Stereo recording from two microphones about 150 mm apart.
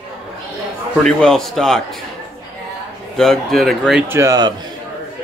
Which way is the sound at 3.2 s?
Centre (ahead or behind).